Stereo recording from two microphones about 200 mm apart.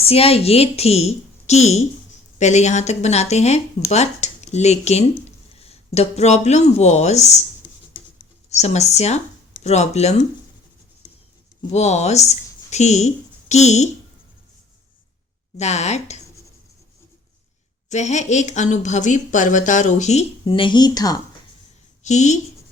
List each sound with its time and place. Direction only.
0.0 s speech: 30° left (ahead or behind)
8.4 s speech: 35° left (ahead or behind)
11.7 s speech: 35° left (ahead or behind)
15.5 s speech: 35° left (ahead or behind)
17.8 s speech: 35° left (ahead or behind); by 21.2 s 20° left (ahead or behind)
22.0 s a woman's voice: 35° left (ahead or behind)